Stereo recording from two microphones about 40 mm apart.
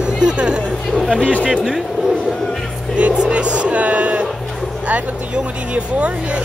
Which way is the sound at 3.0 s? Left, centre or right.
Right.